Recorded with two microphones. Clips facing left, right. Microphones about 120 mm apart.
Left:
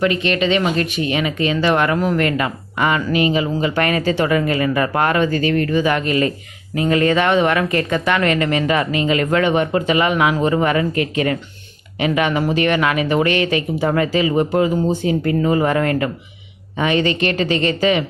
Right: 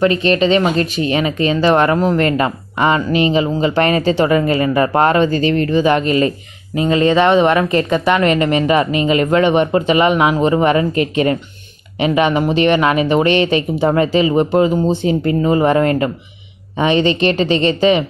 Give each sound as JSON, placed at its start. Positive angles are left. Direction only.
{"t": 0.0, "sound": "speech", "side_deg": -35}